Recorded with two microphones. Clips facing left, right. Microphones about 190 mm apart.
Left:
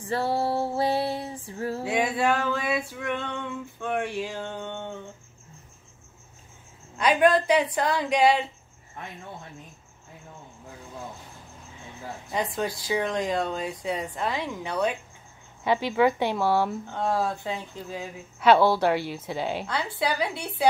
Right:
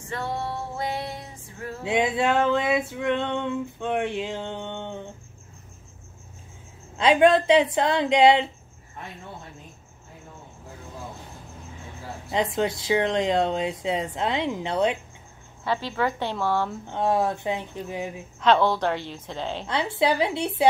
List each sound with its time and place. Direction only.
0.0 s music: 35° left (ahead or behind)
1.9 s male singing: 20° right (ahead or behind)
7.0 s speech: 25° right (ahead or behind)
12.3 s speech: 20° right (ahead or behind)
15.6 s speech: 15° left (ahead or behind)
16.8 s speech: 20° right (ahead or behind)
18.4 s speech: 10° left (ahead or behind)
19.6 s speech: 20° right (ahead or behind)